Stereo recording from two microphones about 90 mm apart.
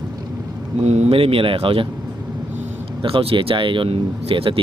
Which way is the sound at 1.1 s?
90° right.